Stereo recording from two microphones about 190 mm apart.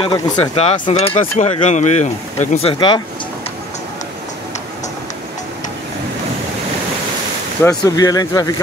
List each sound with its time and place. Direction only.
0.0 s speech: 30° left (ahead or behind)
7.6 s speech: 20° left (ahead or behind)